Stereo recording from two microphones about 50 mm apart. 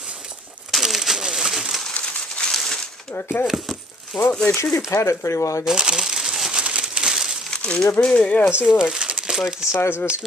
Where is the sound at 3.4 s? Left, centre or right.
Centre.